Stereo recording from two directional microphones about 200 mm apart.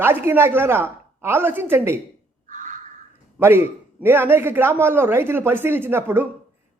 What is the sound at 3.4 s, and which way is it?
Speech, 10° right (ahead or behind).